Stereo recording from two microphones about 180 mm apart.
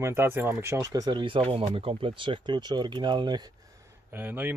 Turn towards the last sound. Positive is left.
turn(degrees=-10)  # may be behind; listen again after turning